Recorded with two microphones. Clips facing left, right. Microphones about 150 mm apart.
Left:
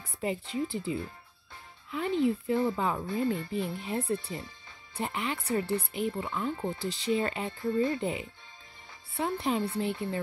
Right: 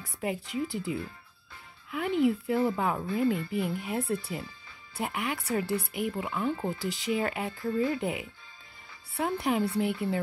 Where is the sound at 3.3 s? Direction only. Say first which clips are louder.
Right 2 dB; 20° left (ahead or behind).